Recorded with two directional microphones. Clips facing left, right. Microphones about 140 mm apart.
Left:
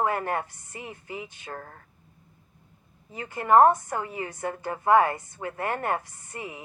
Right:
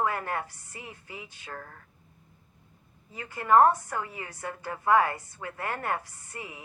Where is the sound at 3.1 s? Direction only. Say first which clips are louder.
Left 2 dB; 20° left (ahead or behind).